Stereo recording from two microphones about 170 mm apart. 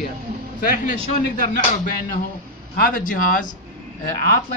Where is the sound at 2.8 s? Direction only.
55° left (ahead or behind).